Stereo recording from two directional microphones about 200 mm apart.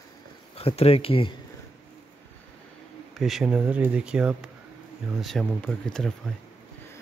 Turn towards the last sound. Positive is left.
turn(degrees=5)  # may be behind; listen again after turning